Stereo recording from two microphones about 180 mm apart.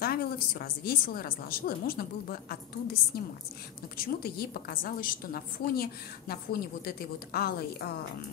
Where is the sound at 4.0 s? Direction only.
55° left (ahead or behind).